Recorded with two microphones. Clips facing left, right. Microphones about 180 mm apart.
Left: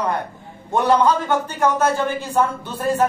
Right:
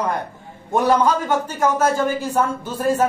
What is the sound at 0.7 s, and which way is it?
Speech, 10° right (ahead or behind).